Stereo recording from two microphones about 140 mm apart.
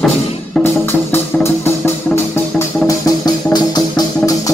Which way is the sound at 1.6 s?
15° left (ahead or behind).